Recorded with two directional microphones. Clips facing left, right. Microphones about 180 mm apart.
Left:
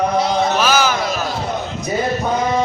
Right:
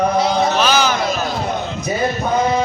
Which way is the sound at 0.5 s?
5° left (ahead or behind).